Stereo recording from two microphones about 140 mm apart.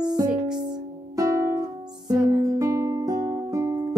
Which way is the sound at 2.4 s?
25° right (ahead or behind).